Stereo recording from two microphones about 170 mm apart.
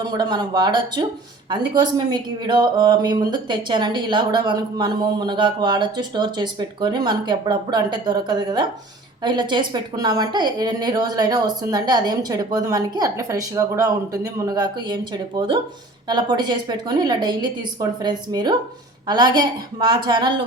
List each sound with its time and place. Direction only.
0.0 s speech: 25° right (ahead or behind)